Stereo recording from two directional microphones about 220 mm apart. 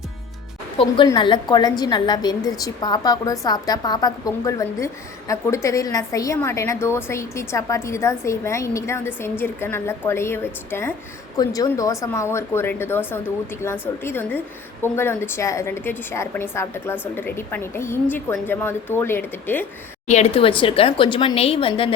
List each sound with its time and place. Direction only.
0.8 s a woman's voice: 20° left (ahead or behind)
20.1 s a woman's voice: 30° left (ahead or behind)